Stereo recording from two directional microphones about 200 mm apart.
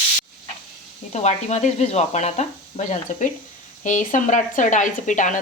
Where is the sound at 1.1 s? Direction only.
35° left (ahead or behind).